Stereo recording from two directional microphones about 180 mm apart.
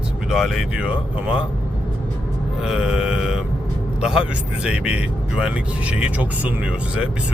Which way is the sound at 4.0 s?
5° right (ahead or behind).